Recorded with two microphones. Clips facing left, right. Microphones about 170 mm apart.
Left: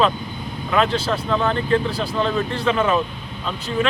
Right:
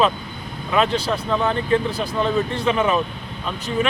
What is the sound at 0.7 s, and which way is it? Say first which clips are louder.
Speech: even; 15° right (ahead or behind).